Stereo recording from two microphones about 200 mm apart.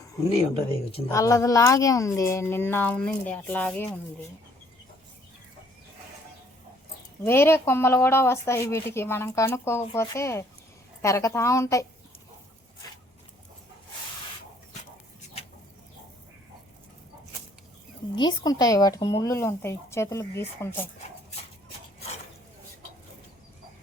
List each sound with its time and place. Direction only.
0.7 s a woman's voice: 30° left (ahead or behind)
1.0 s speech: 15° left (ahead or behind)
7.3 s speech: 10° left (ahead or behind)
18.1 s a woman's voice: 20° left (ahead or behind)